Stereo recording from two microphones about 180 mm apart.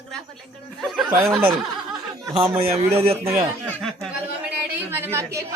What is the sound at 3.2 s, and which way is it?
Speech, 15° right (ahead or behind).